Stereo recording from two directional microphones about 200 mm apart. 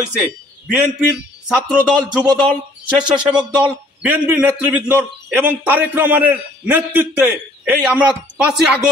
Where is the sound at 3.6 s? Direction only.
5° right (ahead or behind).